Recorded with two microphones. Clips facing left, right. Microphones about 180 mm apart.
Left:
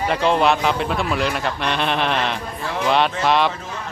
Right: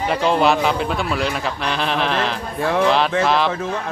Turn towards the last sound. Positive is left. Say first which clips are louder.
# right 1 dB
turn(degrees=0)  # may be behind; listen again after turning